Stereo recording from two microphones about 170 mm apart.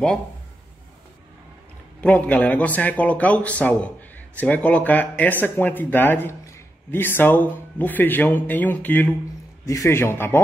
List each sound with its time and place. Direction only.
2.0 s speech: 10° left (ahead or behind)